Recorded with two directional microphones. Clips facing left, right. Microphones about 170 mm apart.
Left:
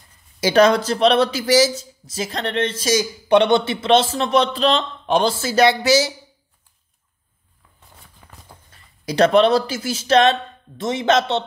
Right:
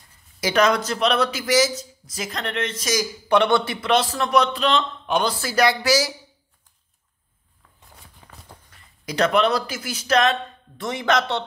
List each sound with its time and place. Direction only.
0.4 s a man's voice: 30° left (ahead or behind)
8.6 s a man's voice: 30° left (ahead or behind)